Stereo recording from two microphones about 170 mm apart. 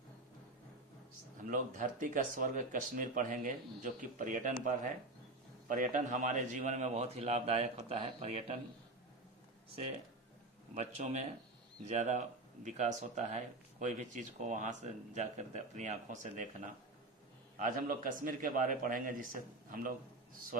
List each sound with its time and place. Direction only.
1.4 s a man's voice: 50° right (ahead or behind)
10.8 s speech: 40° right (ahead or behind)
17.6 s speech: 55° right (ahead or behind)